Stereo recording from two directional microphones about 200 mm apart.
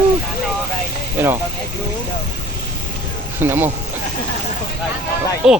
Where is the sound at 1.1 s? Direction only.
10° right (ahead or behind).